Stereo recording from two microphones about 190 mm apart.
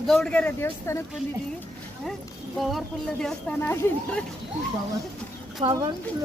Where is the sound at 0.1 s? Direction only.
5° left (ahead or behind).